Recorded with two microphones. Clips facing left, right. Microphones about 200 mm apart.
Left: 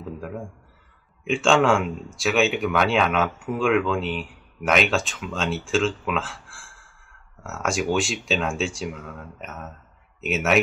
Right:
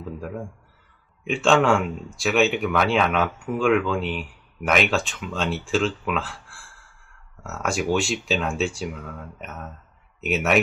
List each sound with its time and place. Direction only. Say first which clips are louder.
1.3 s speech: even; centre (ahead or behind)
10.2 s speech: even; centre (ahead or behind)